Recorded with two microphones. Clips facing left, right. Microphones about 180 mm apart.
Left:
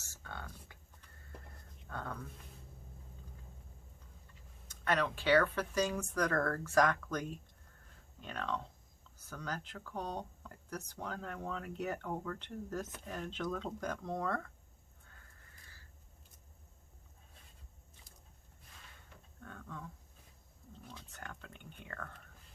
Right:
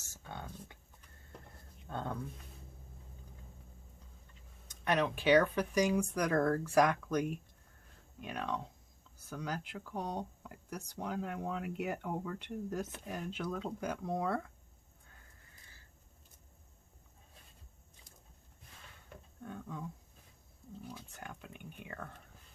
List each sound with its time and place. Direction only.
0.1 s a sound: 20° right (ahead or behind)
1.9 s speech: 25° right (ahead or behind)
4.7 s speech: 15° right (ahead or behind)
19.4 s speech: 15° right (ahead or behind)
20.9 s speech: 10° right (ahead or behind)